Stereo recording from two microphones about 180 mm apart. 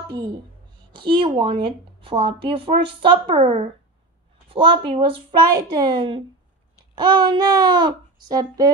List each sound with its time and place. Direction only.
0.9 s speech: 30° right (ahead or behind)